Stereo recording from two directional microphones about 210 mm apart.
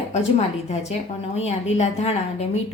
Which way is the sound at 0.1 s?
30° left (ahead or behind).